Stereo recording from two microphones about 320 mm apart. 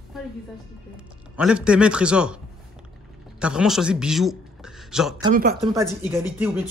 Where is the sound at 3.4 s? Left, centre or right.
Centre.